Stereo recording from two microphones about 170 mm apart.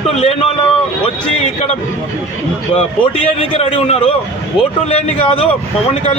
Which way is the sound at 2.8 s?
35° left (ahead or behind).